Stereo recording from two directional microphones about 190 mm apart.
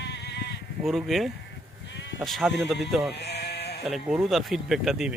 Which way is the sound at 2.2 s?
Centre (ahead or behind).